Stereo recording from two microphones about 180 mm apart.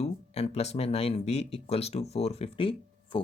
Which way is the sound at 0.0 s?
35° left (ahead or behind).